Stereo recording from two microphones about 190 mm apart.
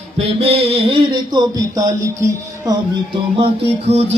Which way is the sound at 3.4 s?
30° right (ahead or behind).